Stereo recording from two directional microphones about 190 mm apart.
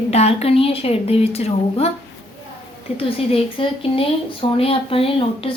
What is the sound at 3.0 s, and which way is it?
A woman's voice, 30° left (ahead or behind).